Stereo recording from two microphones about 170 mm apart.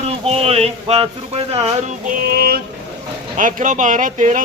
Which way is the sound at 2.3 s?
65° right (ahead or behind).